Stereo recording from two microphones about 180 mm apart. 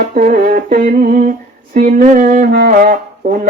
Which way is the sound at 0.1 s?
50° right (ahead or behind).